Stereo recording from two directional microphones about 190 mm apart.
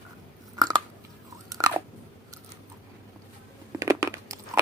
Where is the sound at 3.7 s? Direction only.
15° right (ahead or behind).